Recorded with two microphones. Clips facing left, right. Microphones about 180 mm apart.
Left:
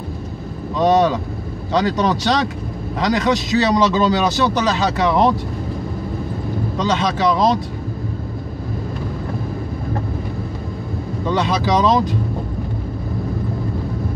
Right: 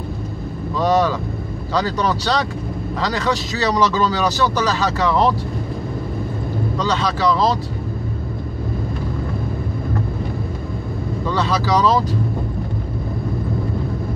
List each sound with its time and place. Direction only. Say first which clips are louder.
0.7 s a man's voice: left 2 dB; 20° left (ahead or behind)
6.8 s a man's voice: left 2 dB; 20° left (ahead or behind)
11.2 s a man's voice: left 2 dB; 20° left (ahead or behind)